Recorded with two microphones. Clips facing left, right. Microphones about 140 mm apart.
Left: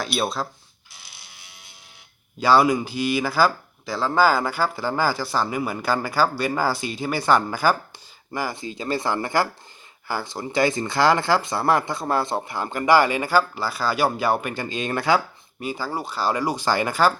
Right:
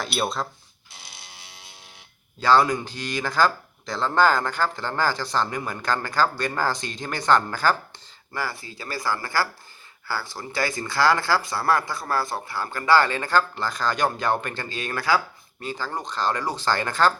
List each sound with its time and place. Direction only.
0.0 s speech: centre (ahead or behind)
2.4 s speech: 10° left (ahead or behind)
15.6 s speech: 10° left (ahead or behind)